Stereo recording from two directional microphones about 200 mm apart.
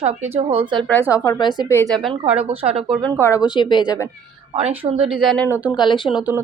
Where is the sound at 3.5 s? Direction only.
25° left (ahead or behind).